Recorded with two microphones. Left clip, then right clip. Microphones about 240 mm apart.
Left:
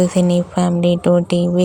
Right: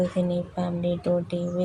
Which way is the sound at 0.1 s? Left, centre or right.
Left.